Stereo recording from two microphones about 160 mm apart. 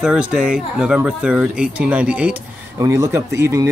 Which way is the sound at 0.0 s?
5° right (ahead or behind).